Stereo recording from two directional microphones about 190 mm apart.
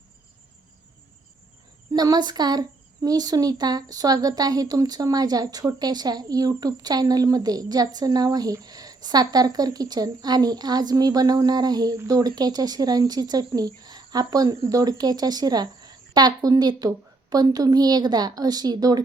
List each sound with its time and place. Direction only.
1.9 s a woman's voice: 20° right (ahead or behind)